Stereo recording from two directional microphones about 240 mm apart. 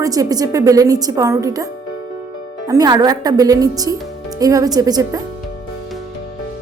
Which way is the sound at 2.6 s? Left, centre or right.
Centre.